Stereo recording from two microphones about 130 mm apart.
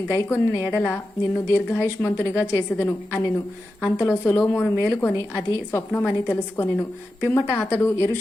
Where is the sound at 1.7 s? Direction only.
20° left (ahead or behind).